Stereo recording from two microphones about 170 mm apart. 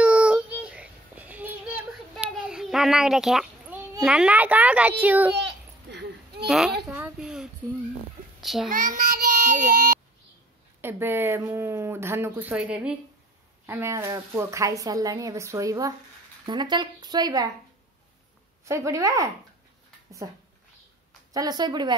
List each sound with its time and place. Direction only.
0.0 s child singing: 5° right (ahead or behind)
5.3 s goat: 90° right
6.4 s a child's voice: centre (ahead or behind)
7.0 s a sound: 5° right (ahead or behind)
8.6 s a child's voice: 50° right (ahead or behind)
10.8 s a woman's voice: 15° right (ahead or behind)
18.7 s a woman's voice: 15° right (ahead or behind)
21.3 s a woman's voice: 20° right (ahead or behind)